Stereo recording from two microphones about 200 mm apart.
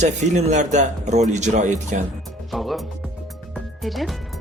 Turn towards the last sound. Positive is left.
turn(degrees=0)  # may be behind; listen again after turning